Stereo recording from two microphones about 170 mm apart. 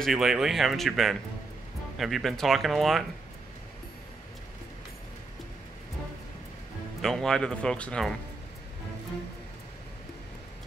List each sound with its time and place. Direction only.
0.0 s speech: centre (ahead or behind)
7.0 s speech: centre (ahead or behind)